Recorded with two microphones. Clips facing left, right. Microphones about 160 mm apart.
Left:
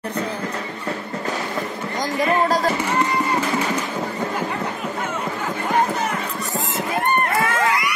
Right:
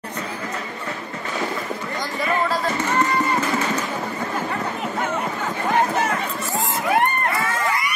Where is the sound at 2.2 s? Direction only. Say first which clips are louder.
Left 3 dB; 40° left (ahead or behind).